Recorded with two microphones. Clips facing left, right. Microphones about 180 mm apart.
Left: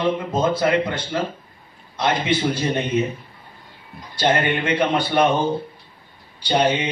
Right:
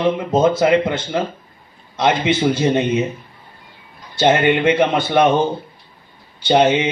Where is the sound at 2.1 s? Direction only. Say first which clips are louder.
Right 4 dB; 25° right (ahead or behind).